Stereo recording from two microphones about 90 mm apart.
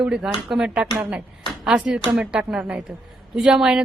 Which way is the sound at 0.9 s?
15° right (ahead or behind).